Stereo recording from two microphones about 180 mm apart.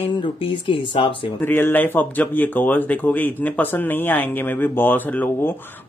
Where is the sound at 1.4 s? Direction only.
10° left (ahead or behind).